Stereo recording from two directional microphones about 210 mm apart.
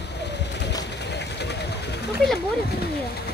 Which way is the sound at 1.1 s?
55° left (ahead or behind).